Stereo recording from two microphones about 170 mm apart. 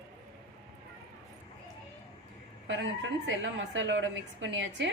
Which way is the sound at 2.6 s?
90° right.